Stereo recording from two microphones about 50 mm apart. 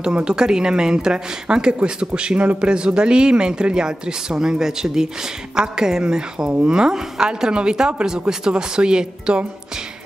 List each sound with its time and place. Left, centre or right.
0.0 s speech: centre